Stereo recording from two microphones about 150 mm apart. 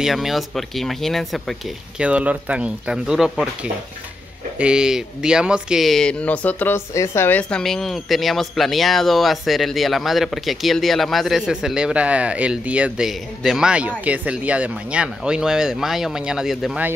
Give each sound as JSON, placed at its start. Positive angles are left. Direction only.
{"t": 0.0, "sound": "speech", "side_deg": 0}
{"t": 4.6, "sound": "speech", "side_deg": -5}